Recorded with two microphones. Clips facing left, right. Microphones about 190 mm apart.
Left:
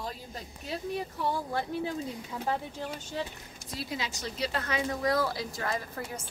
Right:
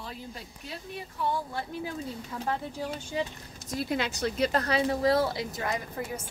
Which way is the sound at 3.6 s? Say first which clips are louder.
Right 6 dB; 55° right (ahead or behind).